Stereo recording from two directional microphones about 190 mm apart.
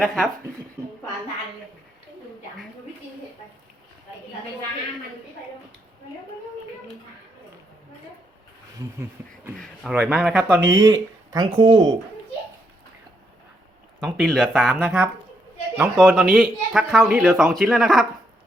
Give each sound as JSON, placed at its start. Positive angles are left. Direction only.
{"t": 0.0, "sound": "speech", "side_deg": 5}
{"t": 9.0, "sound": "a sound", "side_deg": -15}
{"t": 9.6, "sound": "speech", "side_deg": -5}
{"t": 14.0, "sound": "speech", "side_deg": 0}